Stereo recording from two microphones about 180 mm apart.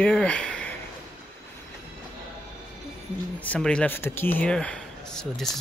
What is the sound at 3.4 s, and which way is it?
Speech, 5° left (ahead or behind).